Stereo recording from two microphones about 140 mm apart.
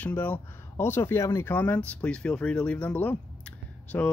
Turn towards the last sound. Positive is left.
turn(degrees=15)  # may be behind; listen again after turning